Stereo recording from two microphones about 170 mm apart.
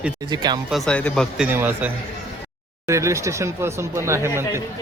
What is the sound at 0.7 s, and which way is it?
Speech, 5° left (ahead or behind).